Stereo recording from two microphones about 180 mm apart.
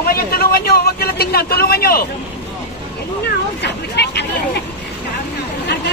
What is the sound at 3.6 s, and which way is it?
Speech, 65° left (ahead or behind).